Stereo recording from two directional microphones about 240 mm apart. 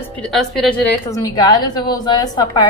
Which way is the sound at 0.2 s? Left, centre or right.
Centre.